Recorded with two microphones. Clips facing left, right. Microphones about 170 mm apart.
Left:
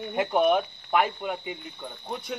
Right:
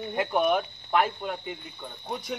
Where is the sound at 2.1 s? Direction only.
Centre (ahead or behind).